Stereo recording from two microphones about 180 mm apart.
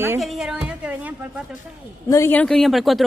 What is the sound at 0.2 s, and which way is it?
Music, centre (ahead or behind).